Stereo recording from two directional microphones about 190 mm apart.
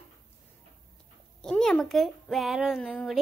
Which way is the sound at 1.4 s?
5° left (ahead or behind).